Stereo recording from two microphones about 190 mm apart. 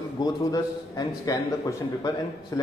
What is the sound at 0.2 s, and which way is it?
A man's voice, 20° left (ahead or behind).